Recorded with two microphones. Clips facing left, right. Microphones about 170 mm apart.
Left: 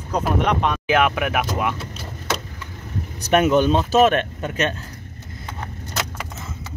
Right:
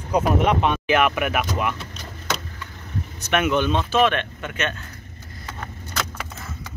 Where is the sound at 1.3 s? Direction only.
15° left (ahead or behind).